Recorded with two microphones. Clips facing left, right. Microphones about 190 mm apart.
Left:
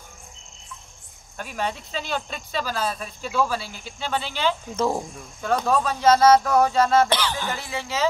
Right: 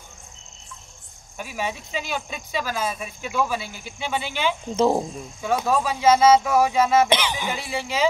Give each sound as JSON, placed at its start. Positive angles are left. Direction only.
{"t": 1.4, "sound": "speech", "side_deg": -10}
{"t": 4.6, "sound": "speech", "side_deg": -25}
{"t": 5.4, "sound": "speech", "side_deg": -10}